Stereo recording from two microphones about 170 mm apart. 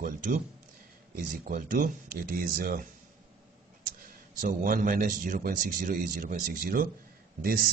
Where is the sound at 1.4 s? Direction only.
55° right (ahead or behind).